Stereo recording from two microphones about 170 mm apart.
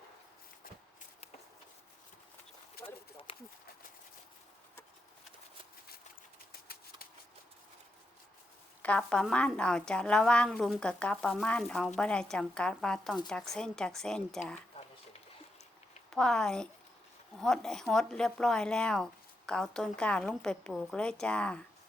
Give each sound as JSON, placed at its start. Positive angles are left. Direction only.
{"t": 3.3, "sound": "a sound", "side_deg": 35}
{"t": 8.8, "sound": "a woman's voice", "side_deg": 5}
{"t": 16.0, "sound": "a woman's voice", "side_deg": 5}